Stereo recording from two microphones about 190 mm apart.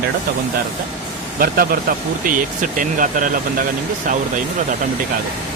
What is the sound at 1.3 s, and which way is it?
Speech, 50° right (ahead or behind).